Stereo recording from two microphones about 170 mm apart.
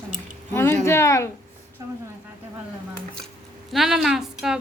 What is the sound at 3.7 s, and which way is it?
Speech, centre (ahead or behind).